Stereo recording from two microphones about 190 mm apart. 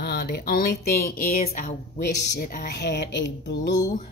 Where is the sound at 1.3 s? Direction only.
40° left (ahead or behind).